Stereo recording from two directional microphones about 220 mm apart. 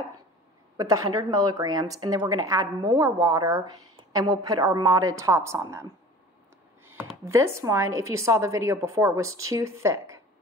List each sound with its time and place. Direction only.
0.7 s a woman's voice: 15° right (ahead or behind)
7.2 s a woman's voice: 10° right (ahead or behind)